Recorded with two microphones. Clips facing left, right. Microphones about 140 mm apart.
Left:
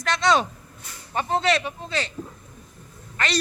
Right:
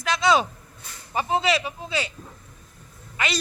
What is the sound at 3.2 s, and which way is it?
Speech, 10° right (ahead or behind).